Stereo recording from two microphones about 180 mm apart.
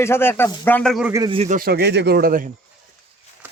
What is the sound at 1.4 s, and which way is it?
A man's voice, 50° right (ahead or behind).